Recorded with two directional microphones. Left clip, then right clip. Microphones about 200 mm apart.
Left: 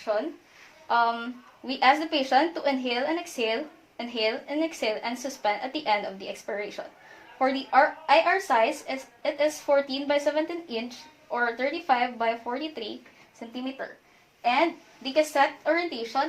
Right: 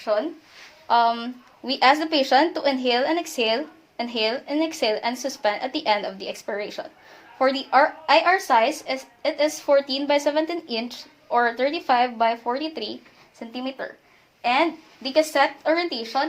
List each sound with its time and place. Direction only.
0.1 s a woman's voice: 45° right (ahead or behind)
15.0 s a woman's voice: 45° right (ahead or behind)